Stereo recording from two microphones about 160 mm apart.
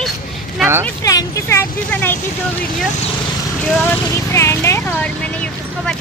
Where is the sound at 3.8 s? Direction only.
15° left (ahead or behind).